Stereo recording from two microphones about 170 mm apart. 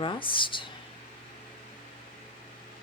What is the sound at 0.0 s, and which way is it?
Speech, 30° left (ahead or behind).